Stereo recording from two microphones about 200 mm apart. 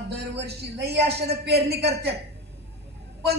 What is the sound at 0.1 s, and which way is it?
A man's voice, 55° right (ahead or behind).